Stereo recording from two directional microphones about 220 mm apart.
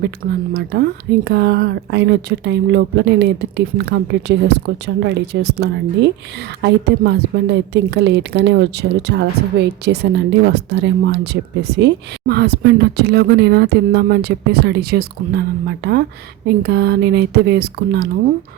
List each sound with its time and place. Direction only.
0.3 s a woman's voice: 45° right (ahead or behind)